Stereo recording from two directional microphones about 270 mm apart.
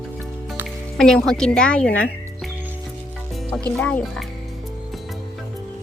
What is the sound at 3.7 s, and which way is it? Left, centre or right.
Speech, centre.